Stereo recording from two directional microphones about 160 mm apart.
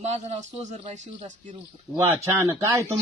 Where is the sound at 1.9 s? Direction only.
15° right (ahead or behind).